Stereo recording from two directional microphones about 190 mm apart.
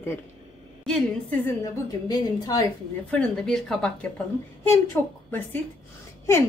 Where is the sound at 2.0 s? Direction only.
20° left (ahead or behind).